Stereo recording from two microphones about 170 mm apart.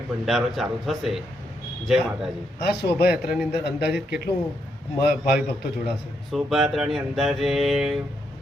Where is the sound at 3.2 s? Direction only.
5° right (ahead or behind).